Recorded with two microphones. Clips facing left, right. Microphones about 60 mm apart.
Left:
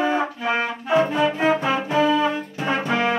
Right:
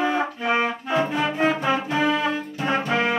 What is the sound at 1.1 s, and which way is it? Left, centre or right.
Music, centre.